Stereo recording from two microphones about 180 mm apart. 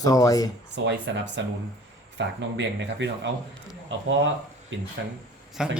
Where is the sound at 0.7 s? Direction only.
75° right (ahead or behind).